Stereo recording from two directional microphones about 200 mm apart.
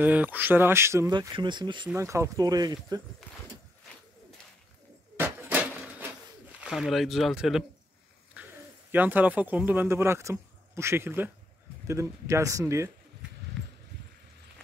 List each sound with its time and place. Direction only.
0.0 s speech: 10° right (ahead or behind)
5.2 s pigeon: 10° right (ahead or behind)
8.9 s speech: 10° right (ahead or behind)
13.6 s a sound: 5° left (ahead or behind)